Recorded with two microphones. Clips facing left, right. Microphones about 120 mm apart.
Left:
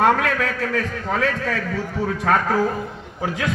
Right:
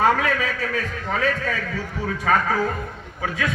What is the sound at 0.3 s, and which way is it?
Speech, 80° left.